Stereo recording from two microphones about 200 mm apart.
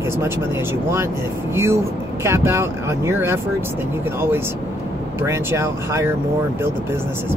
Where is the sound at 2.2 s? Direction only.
15° right (ahead or behind).